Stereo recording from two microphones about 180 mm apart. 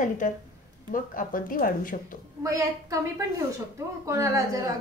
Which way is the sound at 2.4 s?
15° right (ahead or behind).